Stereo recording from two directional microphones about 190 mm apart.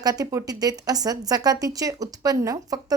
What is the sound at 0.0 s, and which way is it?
A woman's voice, 20° right (ahead or behind).